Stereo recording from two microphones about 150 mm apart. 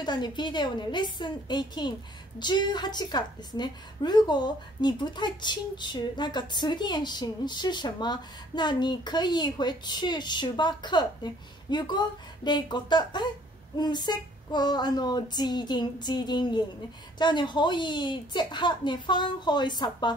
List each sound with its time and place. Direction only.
0.0 s a woman's voice: 30° left (ahead or behind)